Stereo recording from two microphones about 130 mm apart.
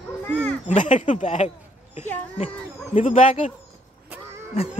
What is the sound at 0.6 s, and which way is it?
Speech, 70° left (ahead or behind).